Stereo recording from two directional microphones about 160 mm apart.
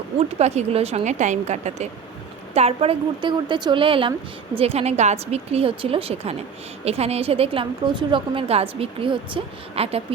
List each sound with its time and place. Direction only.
0.2 s a woman's voice: 40° right (ahead or behind)